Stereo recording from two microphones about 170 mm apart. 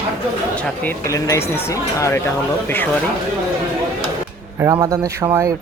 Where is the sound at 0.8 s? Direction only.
15° left (ahead or behind).